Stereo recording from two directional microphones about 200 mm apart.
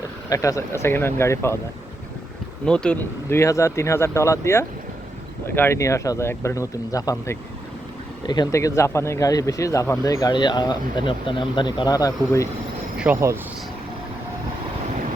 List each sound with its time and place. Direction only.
0.3 s speech: 15° left (ahead or behind)
2.6 s speech: 5° left (ahead or behind)
13.0 s speech: 10° right (ahead or behind)